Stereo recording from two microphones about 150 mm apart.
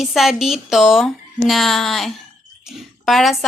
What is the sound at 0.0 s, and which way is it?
A woman's voice, centre (ahead or behind).